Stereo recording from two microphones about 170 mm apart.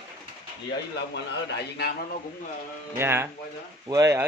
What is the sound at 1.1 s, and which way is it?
Speech, 85° left.